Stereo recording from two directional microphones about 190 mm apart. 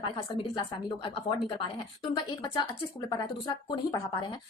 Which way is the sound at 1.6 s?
20° left (ahead or behind).